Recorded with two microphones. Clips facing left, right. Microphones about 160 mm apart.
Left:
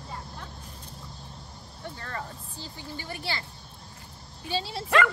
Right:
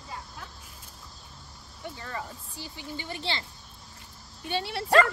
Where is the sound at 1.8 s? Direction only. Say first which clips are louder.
Even; 10° right (ahead or behind).